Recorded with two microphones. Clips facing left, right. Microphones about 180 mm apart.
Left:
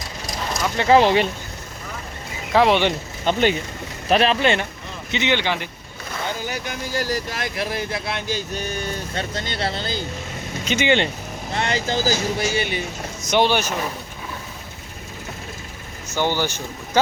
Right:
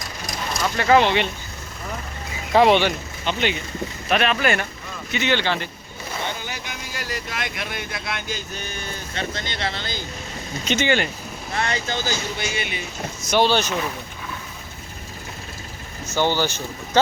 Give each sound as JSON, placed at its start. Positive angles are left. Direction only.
{"t": 0.8, "sound": "speech", "side_deg": 30}
{"t": 2.5, "sound": "speech", "side_deg": 0}
{"t": 3.2, "sound": "speech", "side_deg": 45}
{"t": 4.1, "sound": "speech", "side_deg": 30}
{"t": 6.5, "sound": "speech", "side_deg": 40}
{"t": 10.8, "sound": "speech", "side_deg": 25}
{"t": 13.2, "sound": "speech", "side_deg": 20}
{"t": 16.1, "sound": "speech", "side_deg": 15}